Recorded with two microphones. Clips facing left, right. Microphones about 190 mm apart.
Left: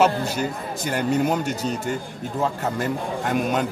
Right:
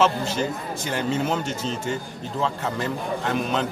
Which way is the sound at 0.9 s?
45° left (ahead or behind).